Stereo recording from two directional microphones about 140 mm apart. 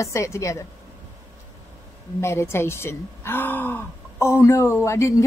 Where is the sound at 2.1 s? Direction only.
20° left (ahead or behind).